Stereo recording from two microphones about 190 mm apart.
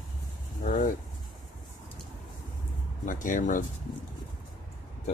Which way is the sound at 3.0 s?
45° left (ahead or behind).